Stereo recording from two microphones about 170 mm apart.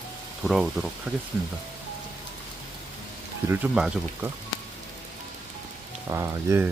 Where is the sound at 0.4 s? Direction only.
5° right (ahead or behind).